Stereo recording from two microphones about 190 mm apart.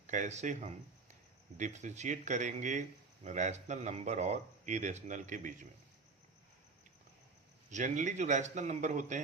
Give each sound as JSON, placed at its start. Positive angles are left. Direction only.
{"t": 0.1, "sound": "speech", "side_deg": -40}
{"t": 7.7, "sound": "speech", "side_deg": -40}